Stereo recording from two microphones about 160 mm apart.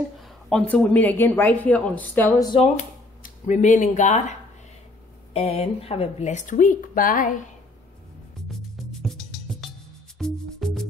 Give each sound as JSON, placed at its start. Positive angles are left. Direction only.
{"t": 0.5, "sound": "a woman's voice", "side_deg": 5}
{"t": 2.4, "sound": "speech", "side_deg": 30}
{"t": 2.8, "sound": "speech", "side_deg": 50}
{"t": 9.0, "sound": "music", "side_deg": 0}